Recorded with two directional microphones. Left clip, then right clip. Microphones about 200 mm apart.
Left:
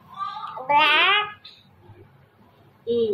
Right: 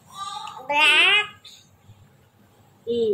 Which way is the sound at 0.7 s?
5° right (ahead or behind).